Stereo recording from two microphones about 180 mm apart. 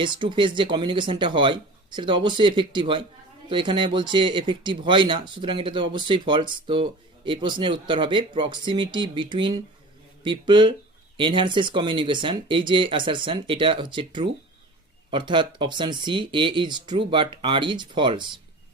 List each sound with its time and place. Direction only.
0.0 s speech: 25° right (ahead or behind)